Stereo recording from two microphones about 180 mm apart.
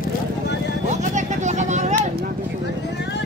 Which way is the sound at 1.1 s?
40° right (ahead or behind).